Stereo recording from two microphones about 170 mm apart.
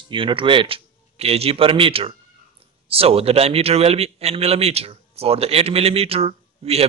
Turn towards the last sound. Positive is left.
turn(degrees=-35)  # may be behind; listen again after turning